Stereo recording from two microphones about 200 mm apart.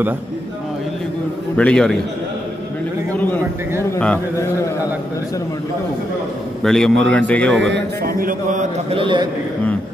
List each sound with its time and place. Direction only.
1.6 s a man's voice: 5° left (ahead or behind)
3.9 s speech: 10° left (ahead or behind)
6.6 s a man's voice: centre (ahead or behind)
7.7 s speech: 45° right (ahead or behind)
8.9 s a man's voice: 25° right (ahead or behind)